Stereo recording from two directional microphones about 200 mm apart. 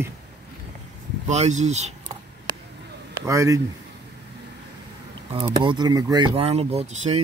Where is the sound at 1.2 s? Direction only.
35° right (ahead or behind).